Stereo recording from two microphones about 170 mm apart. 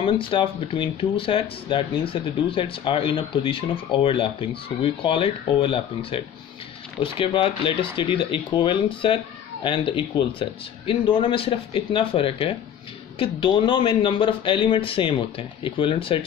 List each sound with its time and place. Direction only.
0.0 s speech: 30° left (ahead or behind)